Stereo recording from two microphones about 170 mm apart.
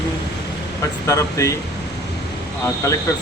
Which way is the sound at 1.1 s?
20° left (ahead or behind).